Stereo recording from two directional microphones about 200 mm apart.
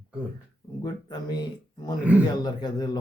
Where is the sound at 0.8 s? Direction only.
20° left (ahead or behind).